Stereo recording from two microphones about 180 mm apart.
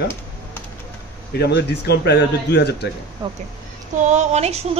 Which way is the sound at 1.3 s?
65° left (ahead or behind).